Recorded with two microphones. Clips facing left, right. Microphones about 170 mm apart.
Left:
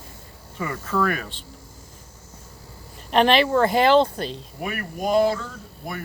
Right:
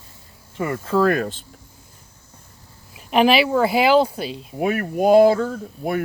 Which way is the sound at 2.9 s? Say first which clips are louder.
Right 2 dB; 5° right (ahead or behind).